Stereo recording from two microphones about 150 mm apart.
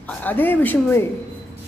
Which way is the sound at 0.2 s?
10° left (ahead or behind).